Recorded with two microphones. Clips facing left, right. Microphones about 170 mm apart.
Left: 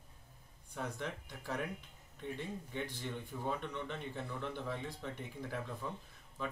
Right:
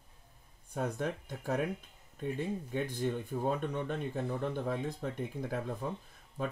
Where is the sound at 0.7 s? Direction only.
45° right (ahead or behind).